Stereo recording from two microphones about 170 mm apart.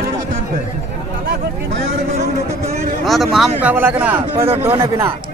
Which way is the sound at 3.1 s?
Centre (ahead or behind).